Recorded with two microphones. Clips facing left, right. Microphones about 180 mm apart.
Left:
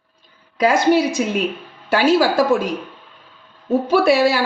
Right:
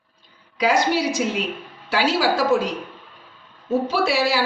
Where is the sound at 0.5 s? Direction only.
55° left (ahead or behind).